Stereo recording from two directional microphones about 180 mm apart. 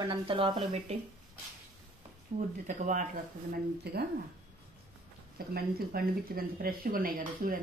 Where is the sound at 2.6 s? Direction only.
45° right (ahead or behind).